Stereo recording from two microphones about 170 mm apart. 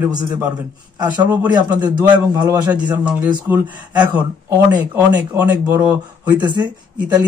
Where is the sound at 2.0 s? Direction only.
25° right (ahead or behind).